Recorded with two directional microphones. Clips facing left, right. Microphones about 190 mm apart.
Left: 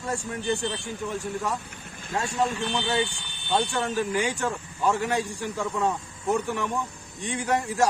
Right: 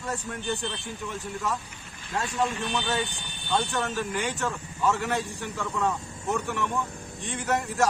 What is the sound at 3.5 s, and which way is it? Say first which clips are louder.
A man's voice: left 2 dB; 15° left (ahead or behind).